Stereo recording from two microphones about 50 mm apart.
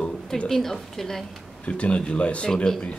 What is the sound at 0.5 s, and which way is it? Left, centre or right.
Speech, centre.